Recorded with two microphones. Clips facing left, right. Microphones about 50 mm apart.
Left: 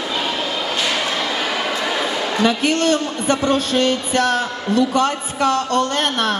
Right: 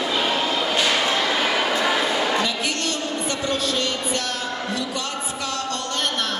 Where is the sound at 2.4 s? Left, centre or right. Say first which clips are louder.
Left 8 dB; left.